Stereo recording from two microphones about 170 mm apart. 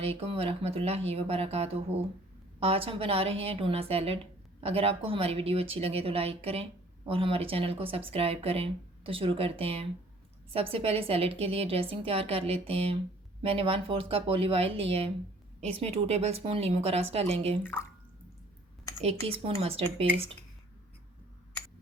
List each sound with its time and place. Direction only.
0.0 s speech: 35° right (ahead or behind)
17.6 s speech: 10° left (ahead or behind)
18.9 s speech: 35° right (ahead or behind)